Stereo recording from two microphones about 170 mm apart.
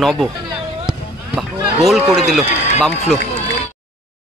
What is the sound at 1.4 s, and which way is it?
A man's voice, centre (ahead or behind).